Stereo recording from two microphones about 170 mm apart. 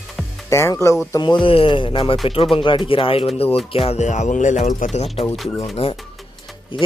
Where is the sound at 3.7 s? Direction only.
40° left (ahead or behind).